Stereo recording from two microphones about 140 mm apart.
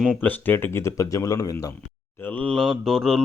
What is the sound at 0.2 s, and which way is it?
Speech, 15° left (ahead or behind).